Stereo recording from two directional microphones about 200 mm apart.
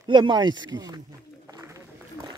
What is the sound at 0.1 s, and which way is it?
Speech, 20° right (ahead or behind).